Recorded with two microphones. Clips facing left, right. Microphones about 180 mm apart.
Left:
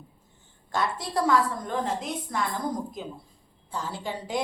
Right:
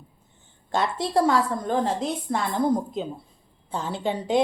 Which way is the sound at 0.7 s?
25° right (ahead or behind).